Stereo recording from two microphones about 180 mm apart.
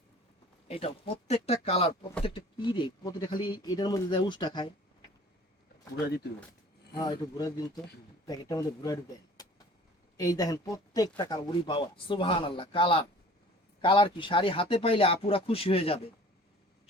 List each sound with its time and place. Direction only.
0.7 s speech: 35° left (ahead or behind)
7.0 s speech: 20° left (ahead or behind)
9.4 s vehicle: 20° left (ahead or behind)
10.2 s speech: 20° left (ahead or behind)